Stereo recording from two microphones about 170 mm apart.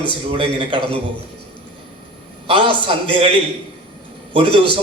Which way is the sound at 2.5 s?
30° right (ahead or behind).